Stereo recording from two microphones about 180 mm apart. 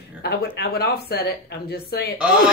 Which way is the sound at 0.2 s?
65° left (ahead or behind).